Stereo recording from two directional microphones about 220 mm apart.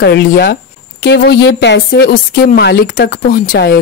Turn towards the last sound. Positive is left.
turn(degrees=45)  # may be behind; listen again after turning